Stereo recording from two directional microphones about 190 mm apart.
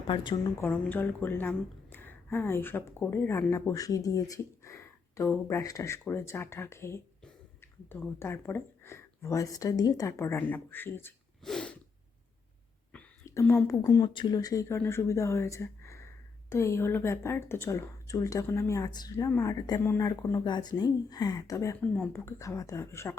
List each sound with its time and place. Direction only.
0.1 s a woman's voice: 25° left (ahead or behind)
0.6 s a woman's voice: 10° left (ahead or behind)
11.4 s a sound: 5° left (ahead or behind)
12.9 s a woman's voice: 10° left (ahead or behind)